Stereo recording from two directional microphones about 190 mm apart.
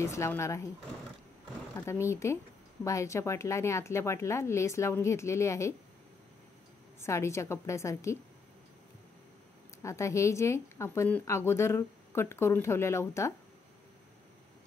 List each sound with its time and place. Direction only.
0.0 s a woman's voice: 15° left (ahead or behind)
1.8 s a woman's voice: 15° left (ahead or behind)
7.0 s a woman's voice: 15° left (ahead or behind)
9.8 s a woman's voice: 15° left (ahead or behind)